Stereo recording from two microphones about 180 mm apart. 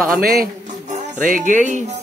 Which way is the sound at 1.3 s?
45° right (ahead or behind).